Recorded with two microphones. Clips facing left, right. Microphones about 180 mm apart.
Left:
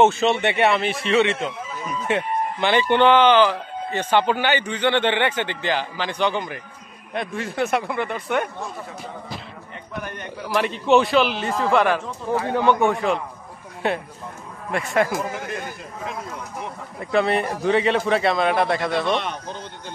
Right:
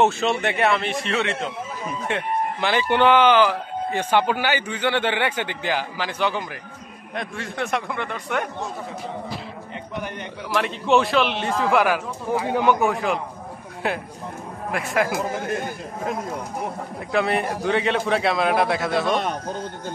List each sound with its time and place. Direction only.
0.0 s a man's voice: centre (ahead or behind)
10.5 s a man's voice: centre (ahead or behind)
12.7 s a man's voice: centre (ahead or behind)
17.1 s a man's voice: centre (ahead or behind)
19.1 s a man's voice: 40° right (ahead or behind)